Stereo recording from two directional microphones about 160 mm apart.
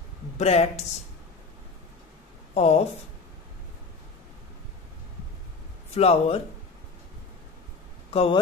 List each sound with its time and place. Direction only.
0.4 s speech: 40° left (ahead or behind)
2.5 s speech: 40° left (ahead or behind)
5.9 s speech: 40° left (ahead or behind)
8.1 s speech: 35° left (ahead or behind)